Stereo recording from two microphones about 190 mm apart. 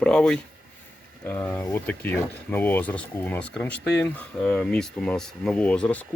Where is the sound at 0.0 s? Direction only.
5° left (ahead or behind).